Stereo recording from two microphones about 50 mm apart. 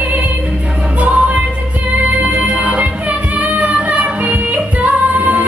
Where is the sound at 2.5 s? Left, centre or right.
Right.